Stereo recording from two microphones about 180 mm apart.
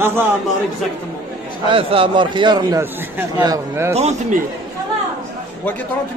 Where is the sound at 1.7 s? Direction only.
30° right (ahead or behind).